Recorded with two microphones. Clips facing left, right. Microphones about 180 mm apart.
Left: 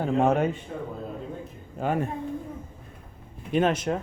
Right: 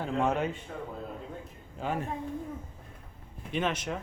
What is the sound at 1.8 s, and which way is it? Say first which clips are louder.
Speech: left 6 dB; 55° left (ahead or behind).